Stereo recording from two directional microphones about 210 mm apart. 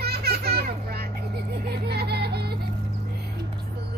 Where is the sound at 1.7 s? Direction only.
50° right (ahead or behind).